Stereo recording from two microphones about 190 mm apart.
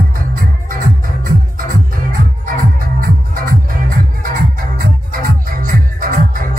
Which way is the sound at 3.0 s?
50° right (ahead or behind).